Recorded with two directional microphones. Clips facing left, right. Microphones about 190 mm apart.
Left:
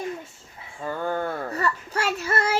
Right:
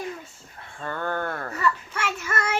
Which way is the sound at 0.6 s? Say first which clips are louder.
Left 2 dB; 10° left (ahead or behind).